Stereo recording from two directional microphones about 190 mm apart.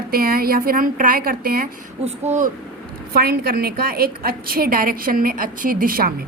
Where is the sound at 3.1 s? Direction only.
55° right (ahead or behind).